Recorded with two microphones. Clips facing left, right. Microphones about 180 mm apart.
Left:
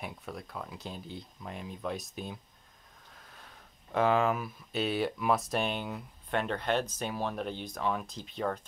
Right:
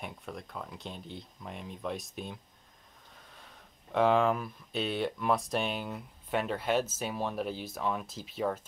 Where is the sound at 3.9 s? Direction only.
Centre (ahead or behind).